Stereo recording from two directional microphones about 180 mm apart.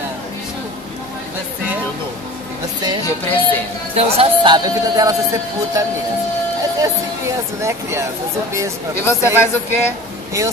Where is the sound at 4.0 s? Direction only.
35° right (ahead or behind).